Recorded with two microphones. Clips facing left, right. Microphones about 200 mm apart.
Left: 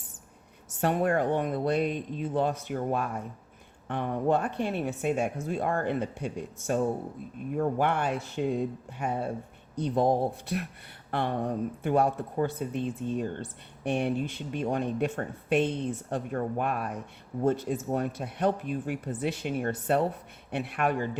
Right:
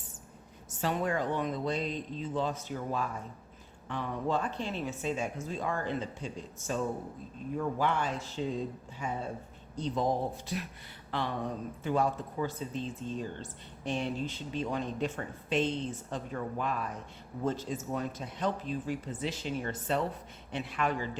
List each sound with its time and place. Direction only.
0.8 s speech: 60° left (ahead or behind)
7.5 s speech: 55° left (ahead or behind)